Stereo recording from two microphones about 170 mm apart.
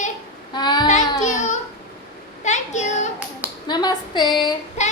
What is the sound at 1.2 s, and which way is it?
Babbling, 45° left (ahead or behind).